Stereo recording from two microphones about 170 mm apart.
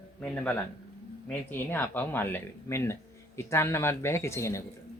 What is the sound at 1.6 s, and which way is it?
Speech, 10° left (ahead or behind).